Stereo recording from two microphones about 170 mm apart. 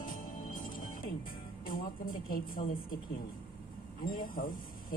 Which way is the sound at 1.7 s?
55° left (ahead or behind).